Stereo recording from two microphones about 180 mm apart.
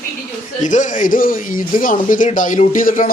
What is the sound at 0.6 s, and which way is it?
Speech, 45° left (ahead or behind).